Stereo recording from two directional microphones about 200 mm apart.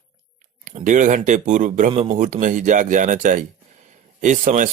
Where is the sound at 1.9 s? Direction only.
25° right (ahead or behind).